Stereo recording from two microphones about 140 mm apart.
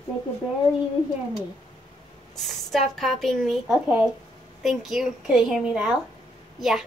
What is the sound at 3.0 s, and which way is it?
A woman's voice, centre (ahead or behind).